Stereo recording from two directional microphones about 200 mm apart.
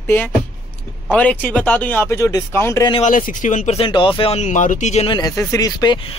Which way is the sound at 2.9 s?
40° left (ahead or behind).